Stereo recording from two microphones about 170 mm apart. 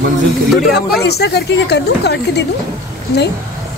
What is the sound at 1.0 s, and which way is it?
Speech, 75° left (ahead or behind).